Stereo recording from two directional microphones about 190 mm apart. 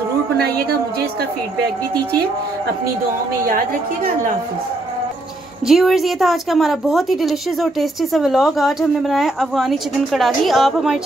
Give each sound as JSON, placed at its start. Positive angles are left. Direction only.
{"t": 0.4, "sound": "a woman's voice", "side_deg": -55}
{"t": 3.4, "sound": "a woman's voice", "side_deg": -50}
{"t": 5.7, "sound": "a woman's voice", "side_deg": 0}